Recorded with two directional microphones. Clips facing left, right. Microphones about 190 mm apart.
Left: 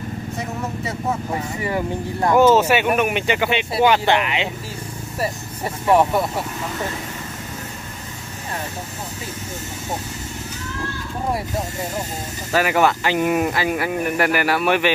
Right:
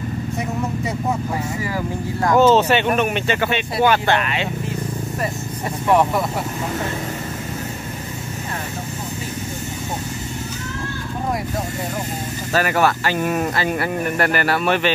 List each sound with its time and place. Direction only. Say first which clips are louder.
1.6 s speech: left 1 dB; 20° left (ahead or behind)
5.9 s speech: left 1 dB; centre (ahead or behind)
12.5 s speech: left 1 dB; 15° left (ahead or behind)